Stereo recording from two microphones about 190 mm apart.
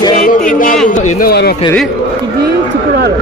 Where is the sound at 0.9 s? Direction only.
55° left (ahead or behind).